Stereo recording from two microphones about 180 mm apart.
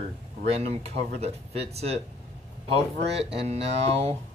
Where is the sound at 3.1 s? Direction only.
35° right (ahead or behind).